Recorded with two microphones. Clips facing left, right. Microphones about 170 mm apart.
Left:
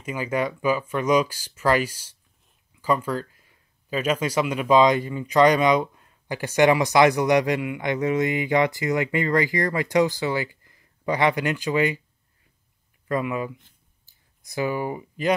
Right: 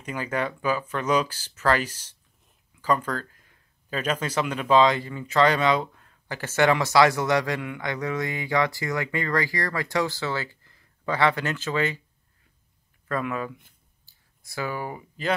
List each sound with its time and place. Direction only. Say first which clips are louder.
0.0 s speech: left 3 dB; 10° left (ahead or behind)
13.1 s speech: left 3 dB; 10° left (ahead or behind)